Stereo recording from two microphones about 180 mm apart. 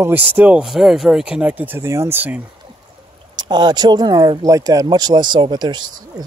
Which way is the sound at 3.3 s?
25° right (ahead or behind).